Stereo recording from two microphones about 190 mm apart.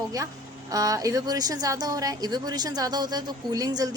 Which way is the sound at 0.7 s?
20° right (ahead or behind).